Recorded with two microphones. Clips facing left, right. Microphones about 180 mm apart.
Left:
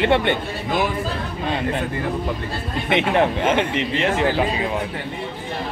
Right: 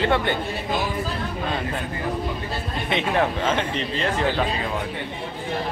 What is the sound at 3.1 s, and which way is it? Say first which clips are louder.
Speech: left 3 dB; 20° left (ahead or behind).